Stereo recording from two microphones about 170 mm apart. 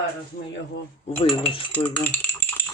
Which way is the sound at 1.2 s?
35° left (ahead or behind).